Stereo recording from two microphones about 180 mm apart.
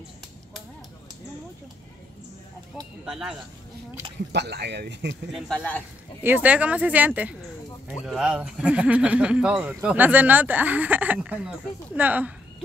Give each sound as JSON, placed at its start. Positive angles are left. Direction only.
{"t": 3.1, "sound": "speech", "side_deg": -5}
{"t": 4.3, "sound": "speech", "side_deg": -70}
{"t": 5.3, "sound": "speech", "side_deg": 0}